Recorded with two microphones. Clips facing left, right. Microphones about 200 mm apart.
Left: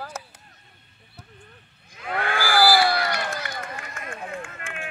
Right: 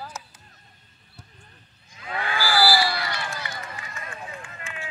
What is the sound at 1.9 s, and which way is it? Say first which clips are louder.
Run: left 3 dB; 55° left (ahead or behind).